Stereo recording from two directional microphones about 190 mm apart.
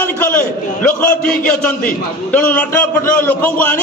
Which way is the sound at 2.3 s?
10° left (ahead or behind).